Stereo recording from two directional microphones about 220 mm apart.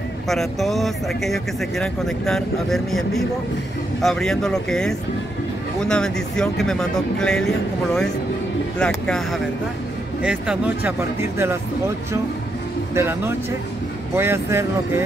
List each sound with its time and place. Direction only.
0.3 s speech: centre (ahead or behind)
12.9 s speech: 10° right (ahead or behind)